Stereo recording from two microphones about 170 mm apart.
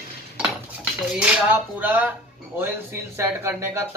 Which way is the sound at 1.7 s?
10° right (ahead or behind).